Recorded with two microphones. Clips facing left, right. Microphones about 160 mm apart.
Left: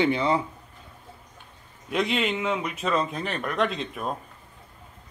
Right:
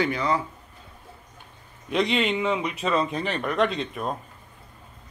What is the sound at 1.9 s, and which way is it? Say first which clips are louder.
Speech: right 2 dB; centre (ahead or behind).